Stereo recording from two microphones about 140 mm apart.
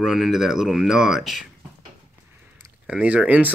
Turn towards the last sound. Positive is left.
turn(degrees=-10)  # may be behind; listen again after turning